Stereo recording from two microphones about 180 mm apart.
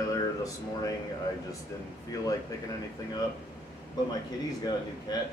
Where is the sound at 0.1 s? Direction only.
20° left (ahead or behind).